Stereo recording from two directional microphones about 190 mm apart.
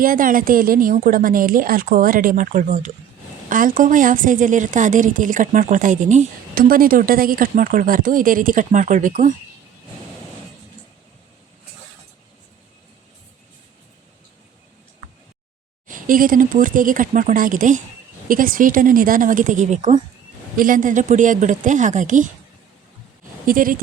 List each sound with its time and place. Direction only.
0.0 s a woman's voice: 45° right (ahead or behind)
15.9 s a woman's voice: 45° right (ahead or behind)
23.5 s a woman's voice: 45° right (ahead or behind)